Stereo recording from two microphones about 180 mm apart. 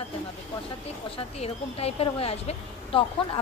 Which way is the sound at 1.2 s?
35° left (ahead or behind).